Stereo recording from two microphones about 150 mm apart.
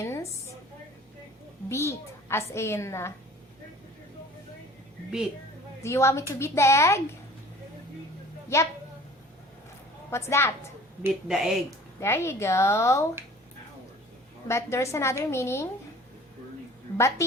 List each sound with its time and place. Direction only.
0.0 s a sound: 20° left (ahead or behind)
1.7 s a woman's voice: 15° left (ahead or behind)
5.8 s a woman's voice: 20° left (ahead or behind)
8.5 s speech: 20° left (ahead or behind)
10.1 s a woman's voice: 15° left (ahead or behind)
11.3 s speech: 5° right (ahead or behind)
11.9 s a woman's voice: 15° left (ahead or behind)
14.4 s a woman's voice: 20° left (ahead or behind)
16.9 s a sound: 15° left (ahead or behind)